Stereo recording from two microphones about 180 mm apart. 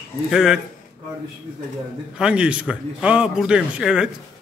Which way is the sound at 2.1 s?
5° right (ahead or behind).